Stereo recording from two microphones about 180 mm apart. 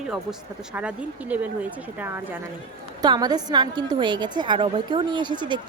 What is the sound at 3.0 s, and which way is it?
A woman's voice, 25° right (ahead or behind).